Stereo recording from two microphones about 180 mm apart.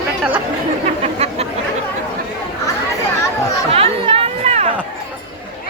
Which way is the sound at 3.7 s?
30° right (ahead or behind).